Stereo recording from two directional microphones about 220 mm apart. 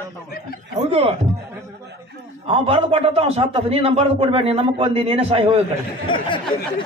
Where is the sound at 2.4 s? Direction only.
25° right (ahead or behind).